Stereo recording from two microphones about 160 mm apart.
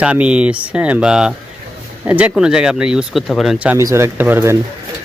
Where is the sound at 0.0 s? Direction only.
5° right (ahead or behind).